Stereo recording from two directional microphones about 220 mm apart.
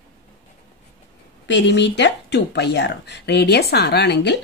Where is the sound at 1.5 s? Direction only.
55° left (ahead or behind).